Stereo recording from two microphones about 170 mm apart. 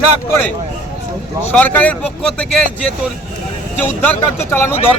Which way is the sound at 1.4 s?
10° left (ahead or behind).